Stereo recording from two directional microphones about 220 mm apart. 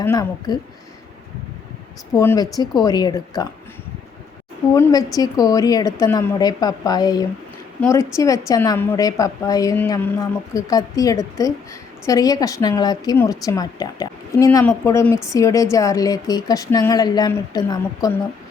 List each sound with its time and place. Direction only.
0.0 s a woman's voice: 15° left (ahead or behind)
2.1 s a woman's voice: 15° left (ahead or behind)
4.7 s a woman's voice: 15° left (ahead or behind)